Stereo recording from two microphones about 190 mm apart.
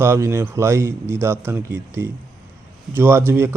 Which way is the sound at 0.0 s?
15° right (ahead or behind).